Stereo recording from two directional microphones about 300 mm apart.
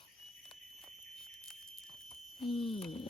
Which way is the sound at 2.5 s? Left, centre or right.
Centre.